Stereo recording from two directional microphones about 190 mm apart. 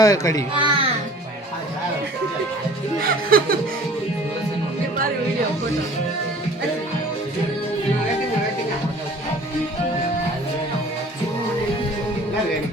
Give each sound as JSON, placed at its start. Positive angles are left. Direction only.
{"t": 0.0, "sound": "speech", "side_deg": 20}
{"t": 0.5, "sound": "a child's voice", "side_deg": -25}
{"t": 3.0, "sound": "speech", "side_deg": -50}